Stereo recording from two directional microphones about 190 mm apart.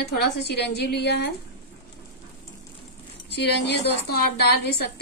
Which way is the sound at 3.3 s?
60° left (ahead or behind).